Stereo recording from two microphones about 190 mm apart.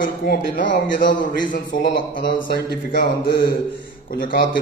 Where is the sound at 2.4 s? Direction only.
55° left (ahead or behind).